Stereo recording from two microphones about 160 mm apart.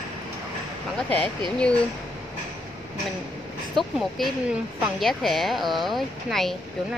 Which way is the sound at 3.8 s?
Centre (ahead or behind).